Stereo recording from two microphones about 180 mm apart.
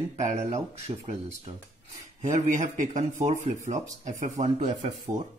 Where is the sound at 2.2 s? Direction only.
40° right (ahead or behind).